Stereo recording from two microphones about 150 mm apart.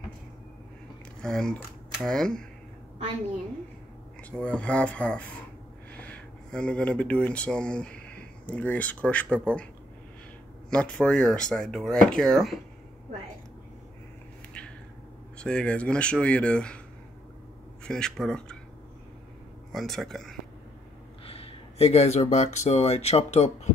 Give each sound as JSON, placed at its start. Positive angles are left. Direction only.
{"t": 1.2, "sound": "speech", "side_deg": 5}
{"t": 4.2, "sound": "speech", "side_deg": 10}
{"t": 10.7, "sound": "speech", "side_deg": 5}
{"t": 15.3, "sound": "speech", "side_deg": 5}
{"t": 17.8, "sound": "speech", "side_deg": 5}
{"t": 19.7, "sound": "speech", "side_deg": 0}
{"t": 21.3, "sound": "speech", "side_deg": 40}